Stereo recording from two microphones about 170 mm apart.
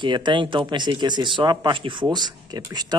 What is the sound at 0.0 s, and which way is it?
Speech, 25° right (ahead or behind).